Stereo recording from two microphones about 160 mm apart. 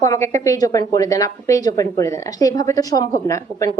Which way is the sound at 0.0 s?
20° left (ahead or behind).